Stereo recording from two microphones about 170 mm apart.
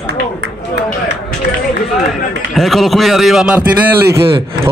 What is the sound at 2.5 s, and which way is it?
Speech, centre (ahead or behind).